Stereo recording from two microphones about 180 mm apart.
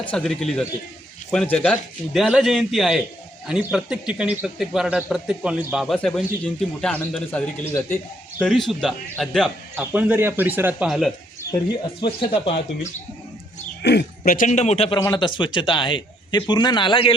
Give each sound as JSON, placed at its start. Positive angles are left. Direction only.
{"t": 0.1, "sound": "a man's voice", "side_deg": 0}
{"t": 8.4, "sound": "a man's voice", "side_deg": 0}
{"t": 9.7, "sound": "a man's voice", "side_deg": -10}
{"t": 11.7, "sound": "speech", "side_deg": 25}
{"t": 13.8, "sound": "speech", "side_deg": 70}
{"t": 14.3, "sound": "a man's voice", "side_deg": 40}
{"t": 14.9, "sound": "speech", "side_deg": 20}